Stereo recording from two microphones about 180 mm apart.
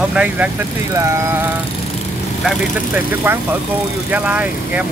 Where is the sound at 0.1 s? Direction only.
5° right (ahead or behind).